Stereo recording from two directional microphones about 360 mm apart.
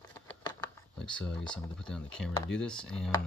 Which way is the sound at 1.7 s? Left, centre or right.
Centre.